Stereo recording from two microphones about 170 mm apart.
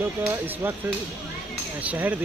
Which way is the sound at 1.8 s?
10° right (ahead or behind).